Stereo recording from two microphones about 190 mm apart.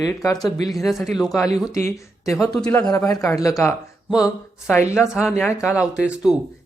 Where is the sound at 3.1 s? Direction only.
15° left (ahead or behind).